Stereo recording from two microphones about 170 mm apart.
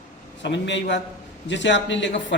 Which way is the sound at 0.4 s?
90° left.